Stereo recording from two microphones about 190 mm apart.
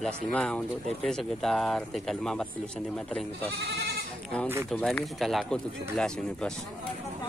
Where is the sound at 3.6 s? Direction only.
60° right (ahead or behind).